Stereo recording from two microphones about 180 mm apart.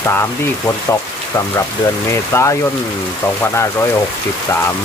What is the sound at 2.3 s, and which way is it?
Speech, 15° left (ahead or behind).